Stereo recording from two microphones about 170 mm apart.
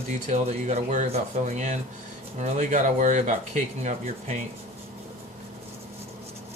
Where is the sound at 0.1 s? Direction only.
45° right (ahead or behind).